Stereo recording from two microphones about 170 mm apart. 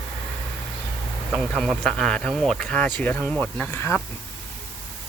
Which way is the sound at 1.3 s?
5° left (ahead or behind).